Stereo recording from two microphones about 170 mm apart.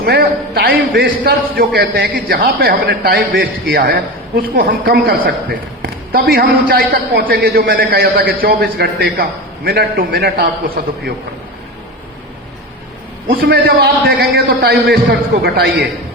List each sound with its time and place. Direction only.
0.0 s a man's voice: 65° right (ahead or behind)
13.5 s a man's voice: 65° right (ahead or behind)